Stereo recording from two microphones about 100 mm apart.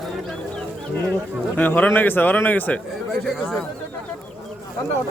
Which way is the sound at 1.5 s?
20° left (ahead or behind).